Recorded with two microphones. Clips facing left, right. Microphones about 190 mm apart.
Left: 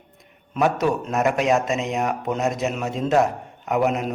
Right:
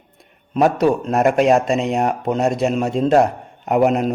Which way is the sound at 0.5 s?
30° right (ahead or behind).